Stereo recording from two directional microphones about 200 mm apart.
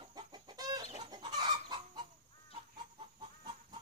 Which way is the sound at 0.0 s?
25° right (ahead or behind).